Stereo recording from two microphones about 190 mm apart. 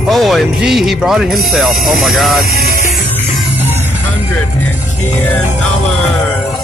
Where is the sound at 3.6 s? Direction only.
10° right (ahead or behind).